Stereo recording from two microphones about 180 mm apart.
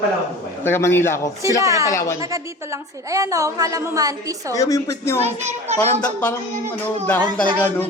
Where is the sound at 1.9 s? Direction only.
15° left (ahead or behind).